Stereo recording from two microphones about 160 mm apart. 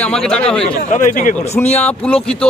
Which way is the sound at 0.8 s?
50° left (ahead or behind).